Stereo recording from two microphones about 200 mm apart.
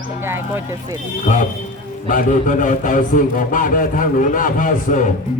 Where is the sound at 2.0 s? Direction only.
40° left (ahead or behind).